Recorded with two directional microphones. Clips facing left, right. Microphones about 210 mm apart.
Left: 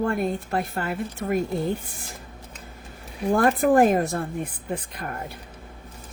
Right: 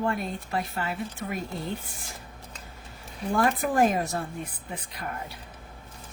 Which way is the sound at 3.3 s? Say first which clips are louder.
Left 6 dB; 50° left (ahead or behind).